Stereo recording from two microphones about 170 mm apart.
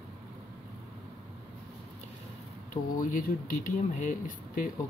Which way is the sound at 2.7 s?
55° left (ahead or behind).